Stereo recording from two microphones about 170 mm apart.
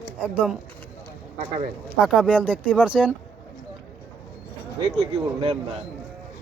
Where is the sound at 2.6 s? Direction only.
10° left (ahead or behind).